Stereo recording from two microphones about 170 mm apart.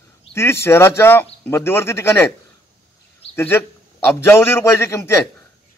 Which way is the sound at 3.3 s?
15° left (ahead or behind).